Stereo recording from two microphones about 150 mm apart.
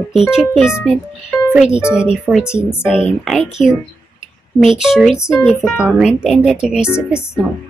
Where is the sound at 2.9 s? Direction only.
Centre (ahead or behind).